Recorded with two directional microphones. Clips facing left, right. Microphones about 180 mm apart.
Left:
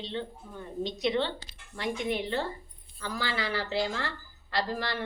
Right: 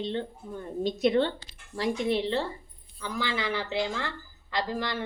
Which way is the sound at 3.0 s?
15° right (ahead or behind).